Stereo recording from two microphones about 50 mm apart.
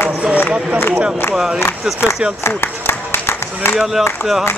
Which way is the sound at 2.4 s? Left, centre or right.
Left.